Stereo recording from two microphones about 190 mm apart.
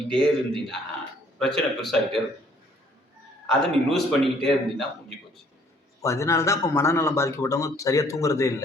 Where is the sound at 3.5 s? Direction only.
Centre (ahead or behind).